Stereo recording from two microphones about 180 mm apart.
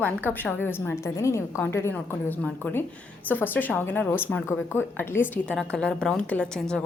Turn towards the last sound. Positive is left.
turn(degrees=5)  # may be behind; listen again after turning